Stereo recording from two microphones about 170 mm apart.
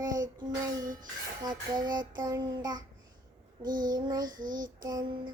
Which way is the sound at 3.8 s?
25° right (ahead or behind).